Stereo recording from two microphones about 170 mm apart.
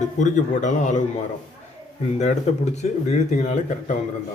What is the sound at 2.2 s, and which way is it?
Speech, 40° left (ahead or behind).